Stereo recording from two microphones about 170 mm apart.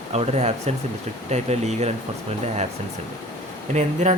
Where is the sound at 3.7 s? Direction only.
45° right (ahead or behind).